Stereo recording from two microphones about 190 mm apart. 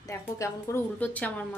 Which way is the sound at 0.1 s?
15° left (ahead or behind).